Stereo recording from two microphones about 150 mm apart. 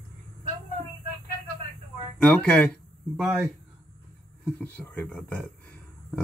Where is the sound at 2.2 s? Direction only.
10° left (ahead or behind).